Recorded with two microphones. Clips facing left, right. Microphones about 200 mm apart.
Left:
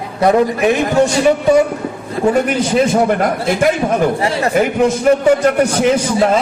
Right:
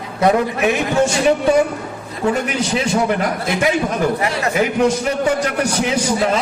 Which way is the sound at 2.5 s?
50° left (ahead or behind).